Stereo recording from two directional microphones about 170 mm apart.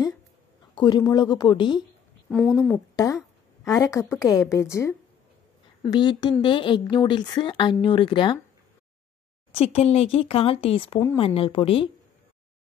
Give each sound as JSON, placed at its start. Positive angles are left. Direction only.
{"t": 0.7, "sound": "speech", "side_deg": 25}
{"t": 2.2, "sound": "speech", "side_deg": 0}
{"t": 3.6, "sound": "a woman's voice", "side_deg": 20}
{"t": 5.8, "sound": "speech", "side_deg": 25}
{"t": 9.5, "sound": "speech", "side_deg": 35}